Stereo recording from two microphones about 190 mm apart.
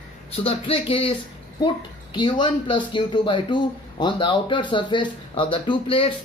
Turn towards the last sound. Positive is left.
turn(degrees=30)  # may be behind; listen again after turning